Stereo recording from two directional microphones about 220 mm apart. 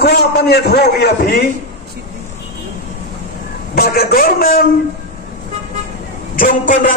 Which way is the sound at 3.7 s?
45° left (ahead or behind).